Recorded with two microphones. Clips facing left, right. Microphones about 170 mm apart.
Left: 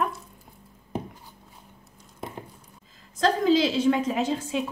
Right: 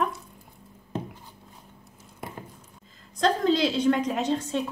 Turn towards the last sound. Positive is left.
turn(degrees=5)  # may be behind; listen again after turning